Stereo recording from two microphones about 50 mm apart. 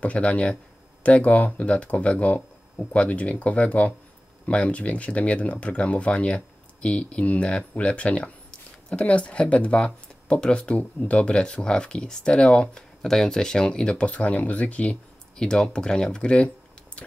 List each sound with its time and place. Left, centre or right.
0.0 s speech: left
13.0 s speech: centre; by 15.0 s left
15.3 s speech: centre